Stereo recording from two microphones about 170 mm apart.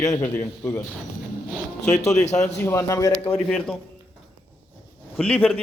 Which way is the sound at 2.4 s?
15° left (ahead or behind).